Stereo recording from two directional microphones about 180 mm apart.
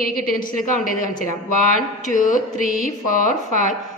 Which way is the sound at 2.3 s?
45° left (ahead or behind).